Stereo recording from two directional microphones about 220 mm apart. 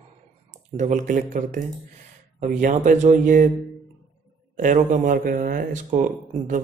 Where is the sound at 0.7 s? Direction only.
35° right (ahead or behind).